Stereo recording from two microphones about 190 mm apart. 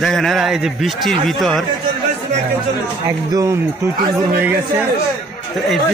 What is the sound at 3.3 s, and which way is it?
A man's voice, 15° right (ahead or behind).